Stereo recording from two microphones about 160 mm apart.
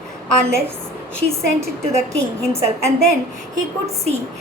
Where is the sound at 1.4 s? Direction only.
20° right (ahead or behind).